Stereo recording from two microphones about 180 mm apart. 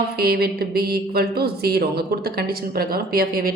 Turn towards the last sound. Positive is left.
turn(degrees=-55)  # may be behind; listen again after turning